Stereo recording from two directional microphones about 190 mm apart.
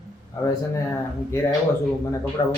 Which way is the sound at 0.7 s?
15° left (ahead or behind).